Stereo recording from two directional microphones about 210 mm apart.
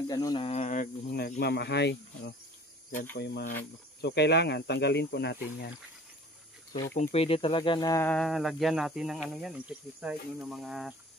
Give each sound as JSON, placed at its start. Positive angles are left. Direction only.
{"t": 0.1, "sound": "speech", "side_deg": 20}
{"t": 7.0, "sound": "speech", "side_deg": 30}